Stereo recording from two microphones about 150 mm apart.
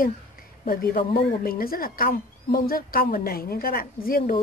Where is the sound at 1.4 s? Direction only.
80° left.